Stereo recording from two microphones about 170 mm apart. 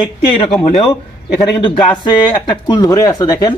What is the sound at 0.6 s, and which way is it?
Speech, 35° left (ahead or behind).